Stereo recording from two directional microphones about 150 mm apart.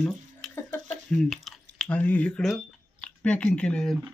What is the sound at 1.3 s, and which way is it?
Speech, 5° left (ahead or behind).